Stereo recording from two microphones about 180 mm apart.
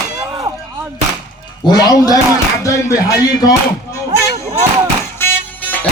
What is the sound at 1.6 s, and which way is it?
A man's voice, 20° left (ahead or behind).